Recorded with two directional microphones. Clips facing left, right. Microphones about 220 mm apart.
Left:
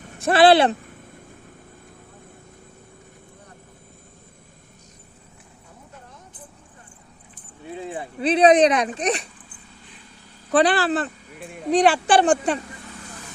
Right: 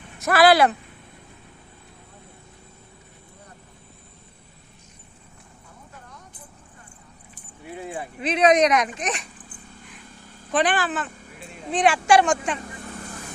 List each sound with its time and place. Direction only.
0.0 s a sound: 40° left (ahead or behind)
0.3 s speech: 30° left (ahead or behind)
7.6 s speech: 25° left (ahead or behind)
10.5 s speech: 35° left (ahead or behind)
11.3 s speech: 50° left (ahead or behind); by 12.5 s 35° left (ahead or behind)
12.6 s vehicle: 50° right (ahead or behind)